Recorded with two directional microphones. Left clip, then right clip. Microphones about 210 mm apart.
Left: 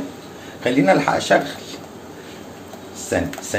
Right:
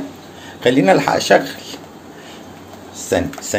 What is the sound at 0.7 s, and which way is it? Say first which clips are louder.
Speech: right 3 dB; 40° right (ahead or behind).